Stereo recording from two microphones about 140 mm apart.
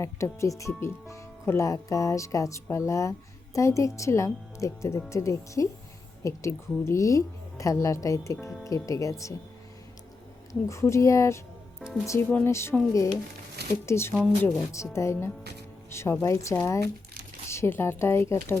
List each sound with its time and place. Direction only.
0.0 s speech: 20° left (ahead or behind)
10.5 s speech: 20° left (ahead or behind)
13.8 s speech: 20° left (ahead or behind)